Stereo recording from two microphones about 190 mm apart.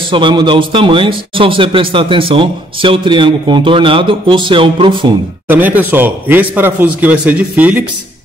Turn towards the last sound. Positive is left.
turn(degrees=-5)  # may be behind; listen again after turning